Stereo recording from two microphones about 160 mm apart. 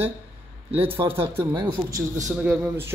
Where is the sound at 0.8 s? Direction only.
35° right (ahead or behind).